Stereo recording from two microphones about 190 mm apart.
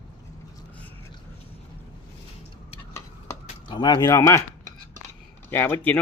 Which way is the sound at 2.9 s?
15° left (ahead or behind).